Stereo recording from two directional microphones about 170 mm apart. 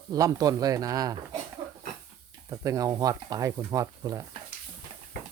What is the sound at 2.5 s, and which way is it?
Speech, 20° right (ahead or behind).